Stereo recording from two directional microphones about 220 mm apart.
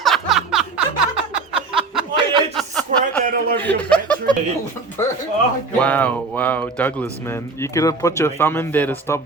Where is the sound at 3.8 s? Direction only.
5° left (ahead or behind).